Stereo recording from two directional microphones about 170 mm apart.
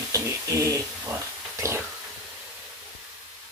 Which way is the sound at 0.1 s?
20° right (ahead or behind).